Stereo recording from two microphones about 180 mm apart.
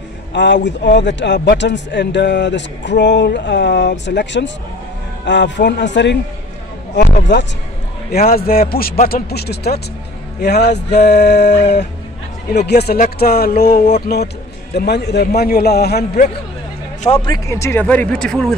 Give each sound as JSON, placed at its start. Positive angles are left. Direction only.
{"t": 0.3, "sound": "speech", "side_deg": 80}
{"t": 8.1, "sound": "a man's voice", "side_deg": 55}
{"t": 17.0, "sound": "speech", "side_deg": 30}
{"t": 17.5, "sound": "speech", "side_deg": 15}